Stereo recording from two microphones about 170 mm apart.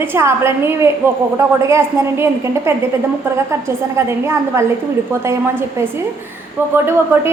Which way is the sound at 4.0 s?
15° right (ahead or behind).